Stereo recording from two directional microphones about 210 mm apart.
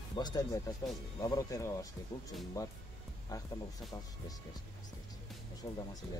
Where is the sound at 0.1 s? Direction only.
20° left (ahead or behind).